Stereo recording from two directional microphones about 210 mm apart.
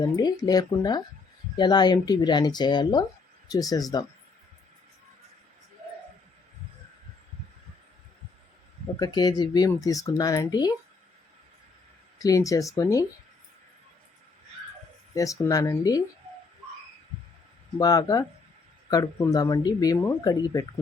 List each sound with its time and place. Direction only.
0.0 s speech: 20° left (ahead or behind)
9.0 s speech: 20° left (ahead or behind)
12.2 s speech: 15° left (ahead or behind)
15.1 s speech: 15° left (ahead or behind)
17.7 s speech: 15° left (ahead or behind)